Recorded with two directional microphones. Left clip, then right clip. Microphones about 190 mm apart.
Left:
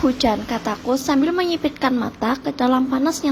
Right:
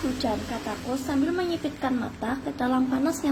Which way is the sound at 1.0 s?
30° left (ahead or behind).